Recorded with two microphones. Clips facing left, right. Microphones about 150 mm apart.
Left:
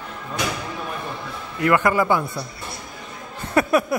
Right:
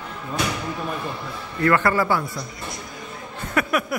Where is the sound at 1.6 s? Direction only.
15° left (ahead or behind).